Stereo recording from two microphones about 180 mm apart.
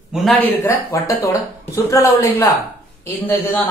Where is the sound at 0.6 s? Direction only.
15° left (ahead or behind).